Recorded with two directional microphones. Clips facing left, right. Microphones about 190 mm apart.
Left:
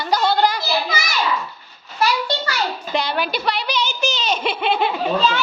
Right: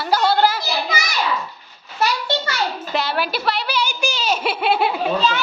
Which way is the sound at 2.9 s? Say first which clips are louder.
Left 1 dB; 5° right (ahead or behind).